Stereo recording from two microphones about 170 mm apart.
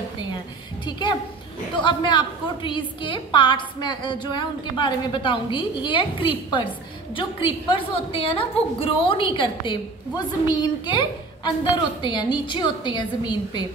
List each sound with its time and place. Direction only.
0.8 s a woman's voice: 25° left (ahead or behind)